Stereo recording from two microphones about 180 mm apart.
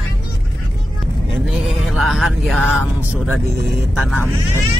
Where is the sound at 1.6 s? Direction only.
Centre (ahead or behind).